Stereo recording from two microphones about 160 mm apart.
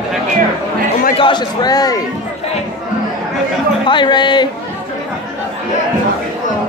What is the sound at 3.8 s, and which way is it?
Speech, 30° left (ahead or behind).